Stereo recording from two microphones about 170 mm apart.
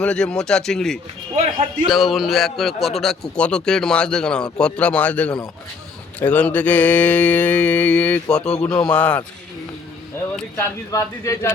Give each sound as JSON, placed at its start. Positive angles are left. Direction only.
{"t": 0.0, "sound": "speech", "side_deg": 5}
{"t": 10.6, "sound": "speech", "side_deg": 20}